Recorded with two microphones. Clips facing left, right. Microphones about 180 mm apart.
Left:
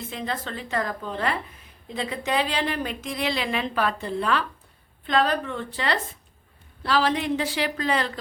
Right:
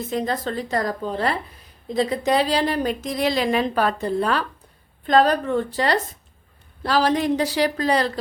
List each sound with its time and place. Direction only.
0.1 s speech: 40° right (ahead or behind)